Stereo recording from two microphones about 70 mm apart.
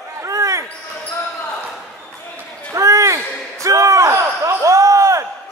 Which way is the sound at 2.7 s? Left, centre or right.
Right.